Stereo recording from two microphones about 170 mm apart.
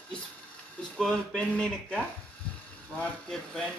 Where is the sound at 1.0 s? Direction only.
5° left (ahead or behind).